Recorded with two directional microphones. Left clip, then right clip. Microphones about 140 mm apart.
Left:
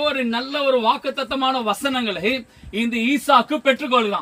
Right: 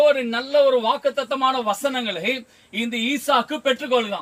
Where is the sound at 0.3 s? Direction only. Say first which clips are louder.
Right 3 dB; 20° right (ahead or behind).